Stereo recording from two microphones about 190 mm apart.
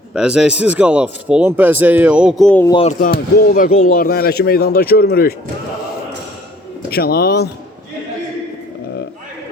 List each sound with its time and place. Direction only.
0.1 s speech: 5° right (ahead or behind)
2.6 s speech: 25° left (ahead or behind)
3.0 s speech: 50° left (ahead or behind)
6.9 s speech: 55° left (ahead or behind)